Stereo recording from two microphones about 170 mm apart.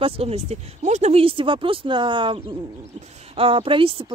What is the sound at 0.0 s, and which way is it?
Speech, 35° right (ahead or behind).